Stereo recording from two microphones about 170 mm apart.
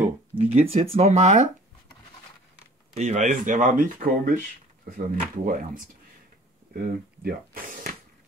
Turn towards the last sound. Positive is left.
turn(degrees=-55)  # may be behind; listen again after turning